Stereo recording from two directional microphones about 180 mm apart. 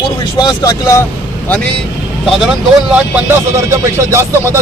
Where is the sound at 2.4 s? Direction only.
5° right (ahead or behind).